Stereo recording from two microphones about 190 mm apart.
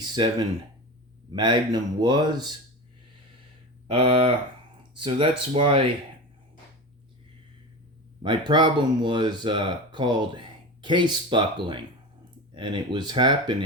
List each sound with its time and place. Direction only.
0.0 s speech: 20° right (ahead or behind)
3.8 s speech: 30° right (ahead or behind)
8.2 s speech: 25° right (ahead or behind)